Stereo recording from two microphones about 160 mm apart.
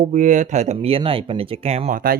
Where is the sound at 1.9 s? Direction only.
60° right (ahead or behind).